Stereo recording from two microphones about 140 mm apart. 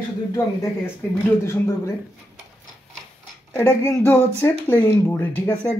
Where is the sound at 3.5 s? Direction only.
15° left (ahead or behind).